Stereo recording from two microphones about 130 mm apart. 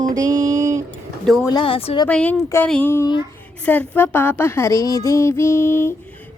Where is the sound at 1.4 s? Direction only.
40° left (ahead or behind).